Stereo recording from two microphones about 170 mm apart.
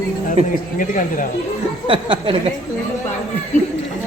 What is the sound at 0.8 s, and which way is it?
Speech, 50° left (ahead or behind).